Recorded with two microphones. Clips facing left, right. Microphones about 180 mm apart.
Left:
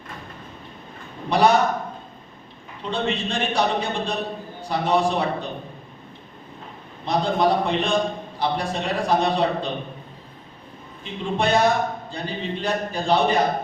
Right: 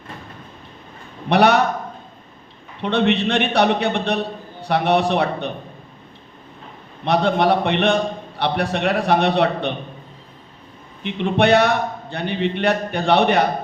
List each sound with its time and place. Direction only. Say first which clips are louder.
1.3 s a man's voice: right 3 dB; 65° right (ahead or behind)
2.8 s a man's voice: right 7 dB; 65° right (ahead or behind)
7.0 s a man's voice: right 3 dB; 65° right (ahead or behind)
11.0 s a man's voice: right 6 dB; 65° right (ahead or behind)